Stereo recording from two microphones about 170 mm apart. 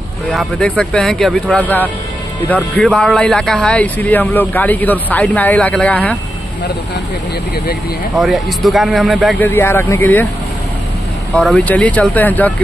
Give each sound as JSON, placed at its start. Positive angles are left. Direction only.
{"t": 0.3, "sound": "speech", "side_deg": 5}
{"t": 8.2, "sound": "speech", "side_deg": 0}
{"t": 9.4, "sound": "speech", "side_deg": 15}
{"t": 11.5, "sound": "speech", "side_deg": 10}